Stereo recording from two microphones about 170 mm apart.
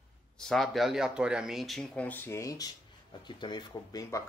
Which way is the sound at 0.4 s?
Centre (ahead or behind).